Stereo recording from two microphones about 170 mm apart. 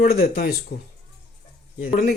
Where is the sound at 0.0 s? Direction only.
65° left (ahead or behind).